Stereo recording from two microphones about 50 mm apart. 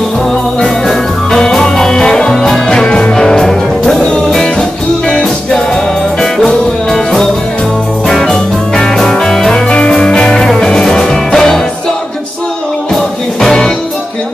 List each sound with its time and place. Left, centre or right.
0.8 s music: centre
6.3 s music: centre
9.7 s music: centre
12.9 s music: centre